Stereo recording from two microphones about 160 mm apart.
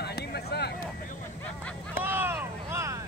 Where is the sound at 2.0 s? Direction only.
15° right (ahead or behind).